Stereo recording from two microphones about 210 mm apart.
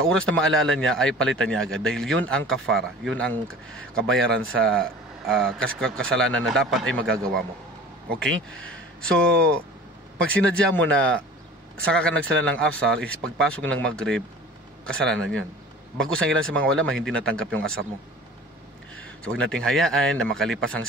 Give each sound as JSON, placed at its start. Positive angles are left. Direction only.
{"t": 0.1, "sound": "speech", "side_deg": 5}
{"t": 4.1, "sound": "speech", "side_deg": -70}
{"t": 4.6, "sound": "speech", "side_deg": 0}
{"t": 8.2, "sound": "a man's voice", "side_deg": 5}
{"t": 18.9, "sound": "speech", "side_deg": 5}